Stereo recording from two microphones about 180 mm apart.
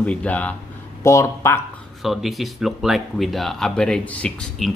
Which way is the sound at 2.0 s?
Centre (ahead or behind).